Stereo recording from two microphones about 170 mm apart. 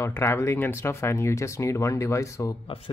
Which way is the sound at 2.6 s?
35° left (ahead or behind).